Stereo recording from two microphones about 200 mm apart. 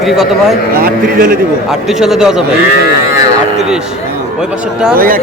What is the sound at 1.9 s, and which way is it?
Speech, centre (ahead or behind).